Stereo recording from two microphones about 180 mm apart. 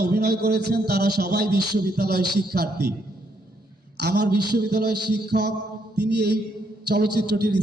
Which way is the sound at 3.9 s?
65° right (ahead or behind).